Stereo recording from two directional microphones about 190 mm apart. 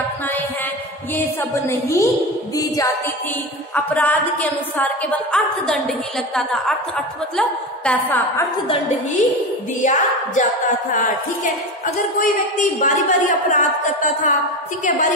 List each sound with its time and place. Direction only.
1.1 s a woman's voice: 10° left (ahead or behind)
2.5 s music: 20° left (ahead or behind)
3.7 s a woman's voice: 10° left (ahead or behind)
9.8 s speech: 40° left (ahead or behind)
11.8 s speech: 45° left (ahead or behind)